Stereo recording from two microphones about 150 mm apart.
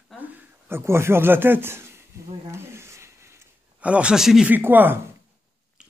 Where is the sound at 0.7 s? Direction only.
15° right (ahead or behind).